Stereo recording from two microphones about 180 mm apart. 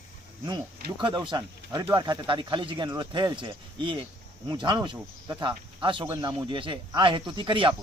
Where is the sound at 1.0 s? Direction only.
25° right (ahead or behind).